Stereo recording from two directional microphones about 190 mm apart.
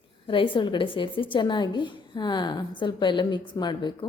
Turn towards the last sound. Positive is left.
turn(degrees=25)  # may be behind; listen again after turning